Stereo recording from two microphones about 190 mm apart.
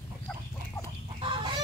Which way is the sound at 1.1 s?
25° right (ahead or behind).